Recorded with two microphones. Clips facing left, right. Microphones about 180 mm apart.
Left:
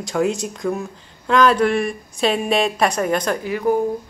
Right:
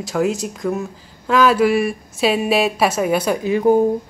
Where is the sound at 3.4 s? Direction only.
25° right (ahead or behind).